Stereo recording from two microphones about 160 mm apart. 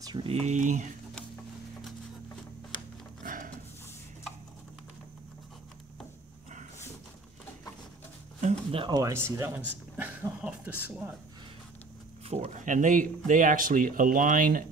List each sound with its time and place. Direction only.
0.0 s speech: 25° right (ahead or behind)
0.3 s speech: 45° right (ahead or behind)
3.3 s a sound: 60° right (ahead or behind)
8.4 s a sound: 45° right (ahead or behind)
8.8 s speech: 20° right (ahead or behind)
12.3 s speech: 45° right (ahead or behind)